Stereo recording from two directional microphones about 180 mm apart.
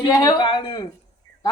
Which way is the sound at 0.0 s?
20° left (ahead or behind).